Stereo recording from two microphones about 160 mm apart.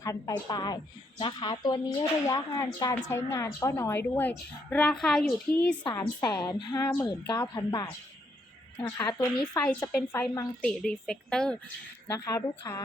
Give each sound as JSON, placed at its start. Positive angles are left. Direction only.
{"t": 0.0, "sound": "speech", "side_deg": 20}
{"t": 5.9, "sound": "speech", "side_deg": 20}
{"t": 6.8, "sound": "speech", "side_deg": 10}
{"t": 7.3, "sound": "speech", "side_deg": 25}
{"t": 9.1, "sound": "speech", "side_deg": 5}
{"t": 9.8, "sound": "speech", "side_deg": 15}
{"t": 10.6, "sound": "speech", "side_deg": 5}
{"t": 12.2, "sound": "speech", "side_deg": 20}